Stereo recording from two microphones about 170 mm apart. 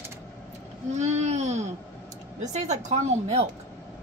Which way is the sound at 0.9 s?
45° right (ahead or behind).